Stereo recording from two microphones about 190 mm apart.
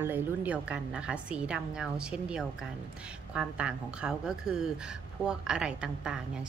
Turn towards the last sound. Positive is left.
turn(degrees=-5)  # may be behind; listen again after turning